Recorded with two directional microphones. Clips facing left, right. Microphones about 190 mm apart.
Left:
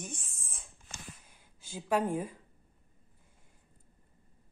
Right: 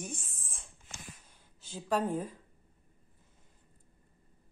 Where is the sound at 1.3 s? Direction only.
10° left (ahead or behind).